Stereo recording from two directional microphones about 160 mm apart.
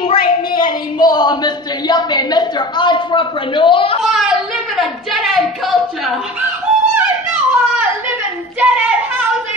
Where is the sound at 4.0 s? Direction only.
5° right (ahead or behind).